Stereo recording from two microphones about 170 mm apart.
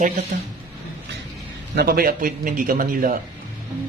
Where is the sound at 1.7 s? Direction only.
60° right (ahead or behind).